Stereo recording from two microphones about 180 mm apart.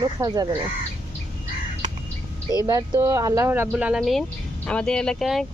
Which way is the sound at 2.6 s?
20° right (ahead or behind).